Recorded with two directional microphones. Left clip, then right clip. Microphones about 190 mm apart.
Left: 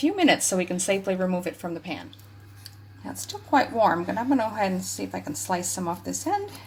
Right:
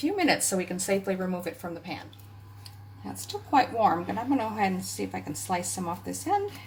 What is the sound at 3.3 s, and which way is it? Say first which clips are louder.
Speech: left 1 dB; 35° left (ahead or behind).